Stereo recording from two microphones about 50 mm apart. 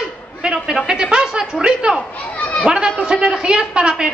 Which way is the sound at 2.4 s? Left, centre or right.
Left.